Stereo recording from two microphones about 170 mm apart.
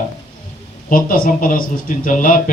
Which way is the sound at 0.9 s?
55° left (ahead or behind).